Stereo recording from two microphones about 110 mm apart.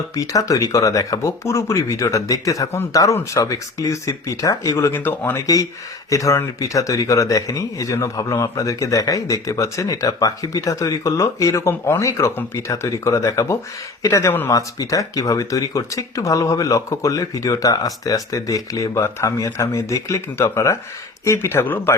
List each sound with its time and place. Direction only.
0.2 s speech: 30° left (ahead or behind)
4.9 s speech: 20° left (ahead or behind)